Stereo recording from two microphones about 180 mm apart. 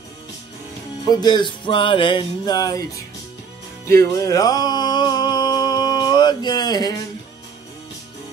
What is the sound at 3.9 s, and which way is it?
Music, 15° left (ahead or behind).